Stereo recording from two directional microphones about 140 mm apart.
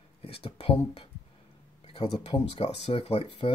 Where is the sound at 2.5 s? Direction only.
45° left (ahead or behind).